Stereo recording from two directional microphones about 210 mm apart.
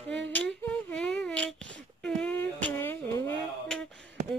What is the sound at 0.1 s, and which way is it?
Humming, 55° right (ahead or behind).